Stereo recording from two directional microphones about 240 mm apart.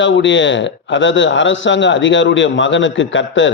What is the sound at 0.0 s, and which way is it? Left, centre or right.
A man's voice, left.